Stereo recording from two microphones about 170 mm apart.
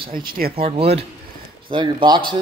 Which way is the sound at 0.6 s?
35° right (ahead or behind).